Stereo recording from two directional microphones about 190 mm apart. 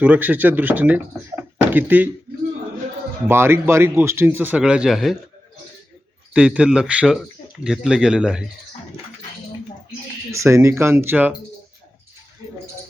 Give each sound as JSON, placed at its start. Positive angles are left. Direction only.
{"t": 0.0, "sound": "speech", "side_deg": -10}
{"t": 3.2, "sound": "speech", "side_deg": -10}
{"t": 6.3, "sound": "speech", "side_deg": -5}
{"t": 10.3, "sound": "speech", "side_deg": -15}